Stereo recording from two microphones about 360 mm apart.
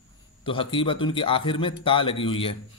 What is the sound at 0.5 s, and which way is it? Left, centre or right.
A man's voice, centre.